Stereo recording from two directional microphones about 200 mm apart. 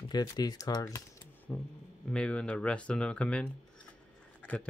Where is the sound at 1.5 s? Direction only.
5° left (ahead or behind).